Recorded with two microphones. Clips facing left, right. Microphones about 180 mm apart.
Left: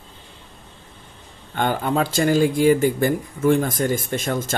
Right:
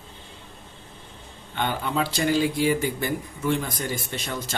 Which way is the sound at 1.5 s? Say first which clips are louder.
Left 5 dB; 45° left (ahead or behind).